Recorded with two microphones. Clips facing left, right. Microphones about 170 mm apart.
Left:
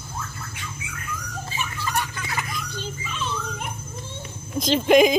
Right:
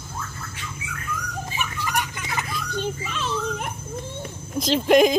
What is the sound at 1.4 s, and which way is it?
Dog, 15° right (ahead or behind).